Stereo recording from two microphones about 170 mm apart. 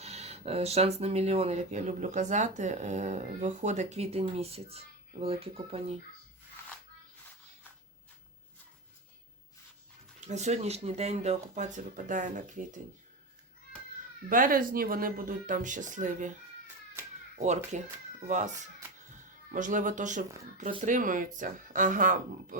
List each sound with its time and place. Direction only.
0.0 s speech: 40° right (ahead or behind)
10.2 s speech: 40° right (ahead or behind)
14.3 s speech: 55° right (ahead or behind)
17.3 s speech: 40° right (ahead or behind)